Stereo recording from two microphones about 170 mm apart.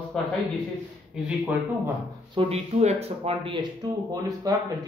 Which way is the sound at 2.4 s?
40° right (ahead or behind).